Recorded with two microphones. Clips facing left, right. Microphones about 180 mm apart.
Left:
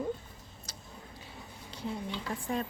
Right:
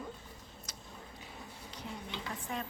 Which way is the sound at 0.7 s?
30° left (ahead or behind).